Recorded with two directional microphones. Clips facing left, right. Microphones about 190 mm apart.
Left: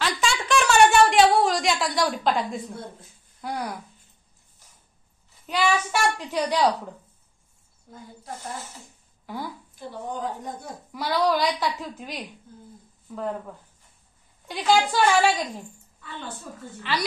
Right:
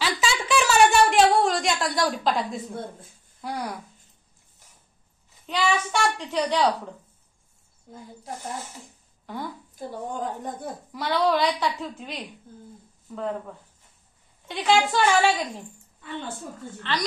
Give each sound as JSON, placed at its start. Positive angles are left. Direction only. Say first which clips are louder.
{"t": 0.0, "sound": "a sound", "louder": "even", "side_deg": -5}
{"t": 3.3, "sound": "speech", "louder": "left 1 dB", "side_deg": 0}
{"t": 5.5, "sound": "a woman's voice", "louder": "left 1 dB", "side_deg": 5}
{"t": 9.2, "sound": "speech", "louder": "even", "side_deg": 5}
{"t": 9.8, "sound": "speech", "louder": "right 1 dB", "side_deg": -45}
{"t": 10.9, "sound": "a woman's voice", "louder": "even", "side_deg": 0}
{"t": 14.5, "sound": "a woman's voice", "louder": "even", "side_deg": 0}
{"t": 16.9, "sound": "a woman's voice", "louder": "left 1 dB", "side_deg": 10}